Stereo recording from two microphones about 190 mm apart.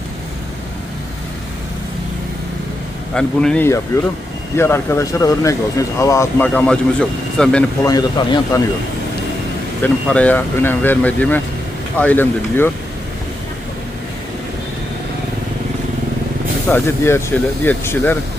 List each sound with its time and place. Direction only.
3.2 s speech: 5° left (ahead or behind)
7.9 s speech: 20° left (ahead or behind)
9.8 s speech: 5° left (ahead or behind)
16.6 s speech: 10° left (ahead or behind)